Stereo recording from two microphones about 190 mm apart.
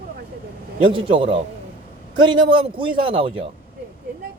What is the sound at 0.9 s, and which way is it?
Speech, 25° right (ahead or behind).